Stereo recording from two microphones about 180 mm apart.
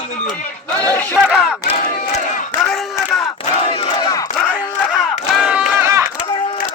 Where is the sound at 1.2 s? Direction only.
10° right (ahead or behind).